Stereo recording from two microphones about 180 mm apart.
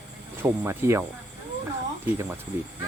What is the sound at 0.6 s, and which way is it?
Speech, 15° right (ahead or behind).